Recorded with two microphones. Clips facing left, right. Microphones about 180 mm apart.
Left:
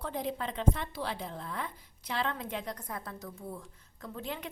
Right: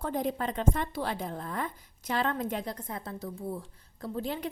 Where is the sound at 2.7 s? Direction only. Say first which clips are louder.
Right 3 dB; 25° right (ahead or behind).